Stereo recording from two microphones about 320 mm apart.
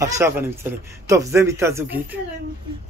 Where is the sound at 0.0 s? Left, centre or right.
Centre.